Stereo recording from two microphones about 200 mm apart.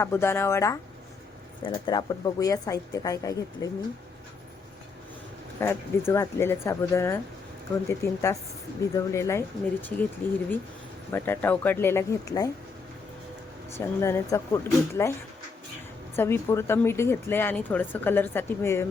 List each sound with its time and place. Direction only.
0.0 s a woman's voice: 10° left (ahead or behind)
5.5 s a woman's voice: 10° left (ahead or behind)
11.1 s a woman's voice: 10° left (ahead or behind)
13.7 s a woman's voice: 15° left (ahead or behind)
16.1 s a woman's voice: 10° left (ahead or behind)